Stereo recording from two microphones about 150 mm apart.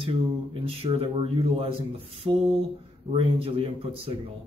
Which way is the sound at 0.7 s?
40° right (ahead or behind).